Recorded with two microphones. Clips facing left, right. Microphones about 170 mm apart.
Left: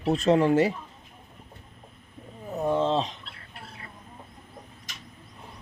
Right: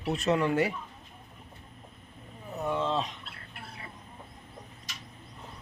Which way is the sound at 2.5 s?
30° left (ahead or behind).